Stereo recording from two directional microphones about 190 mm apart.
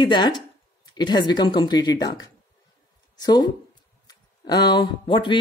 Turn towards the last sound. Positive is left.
turn(degrees=25)  # may be behind; listen again after turning